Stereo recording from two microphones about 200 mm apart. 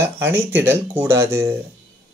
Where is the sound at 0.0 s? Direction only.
10° right (ahead or behind).